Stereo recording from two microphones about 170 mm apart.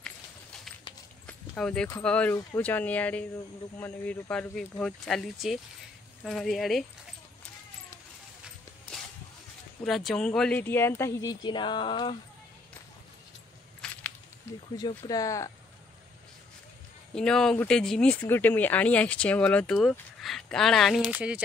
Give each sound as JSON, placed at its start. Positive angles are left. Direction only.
{"t": 1.6, "sound": "speech", "side_deg": 5}
{"t": 9.8, "sound": "speech", "side_deg": 0}
{"t": 13.7, "sound": "a sound", "side_deg": 5}
{"t": 14.8, "sound": "speech", "side_deg": 20}
{"t": 17.1, "sound": "speech", "side_deg": 5}